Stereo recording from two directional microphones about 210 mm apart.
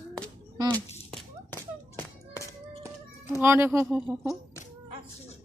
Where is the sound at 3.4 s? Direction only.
10° right (ahead or behind).